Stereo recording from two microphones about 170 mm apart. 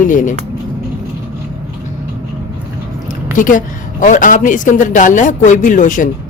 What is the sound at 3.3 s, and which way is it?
A man's voice, 50° left (ahead or behind).